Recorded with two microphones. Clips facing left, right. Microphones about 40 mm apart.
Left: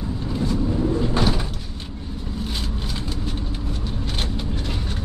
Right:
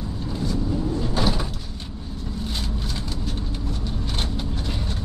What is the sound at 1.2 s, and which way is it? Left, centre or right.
Door, centre.